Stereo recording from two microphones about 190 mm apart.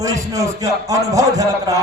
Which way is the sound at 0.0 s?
15° right (ahead or behind).